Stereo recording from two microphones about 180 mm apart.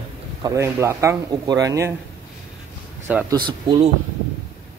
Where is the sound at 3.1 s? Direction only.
10° right (ahead or behind).